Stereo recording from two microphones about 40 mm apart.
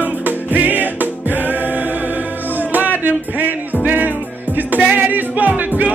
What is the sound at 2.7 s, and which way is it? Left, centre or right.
Music, right.